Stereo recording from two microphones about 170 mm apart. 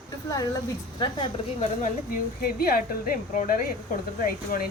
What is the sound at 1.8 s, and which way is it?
Speech, 55° left (ahead or behind).